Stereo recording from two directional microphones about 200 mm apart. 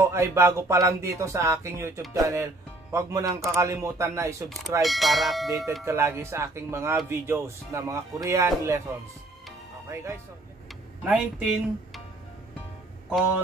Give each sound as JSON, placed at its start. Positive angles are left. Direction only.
{"t": 0.0, "sound": "music", "side_deg": -15}
{"t": 4.8, "sound": "speech", "side_deg": 0}
{"t": 5.9, "sound": "music", "side_deg": -15}
{"t": 11.1, "sound": "speech", "side_deg": -5}